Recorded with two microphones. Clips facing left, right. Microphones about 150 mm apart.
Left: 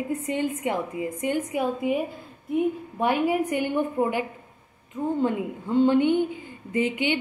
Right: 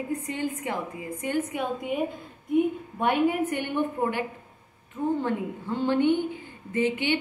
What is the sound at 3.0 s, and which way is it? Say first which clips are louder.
Speech: even; 5° left (ahead or behind).